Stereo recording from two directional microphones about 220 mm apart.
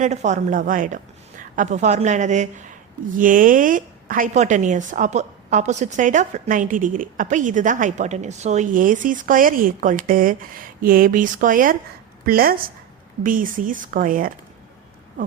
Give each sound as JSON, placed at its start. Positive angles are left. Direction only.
{"t": 0.0, "sound": "speech", "side_deg": -30}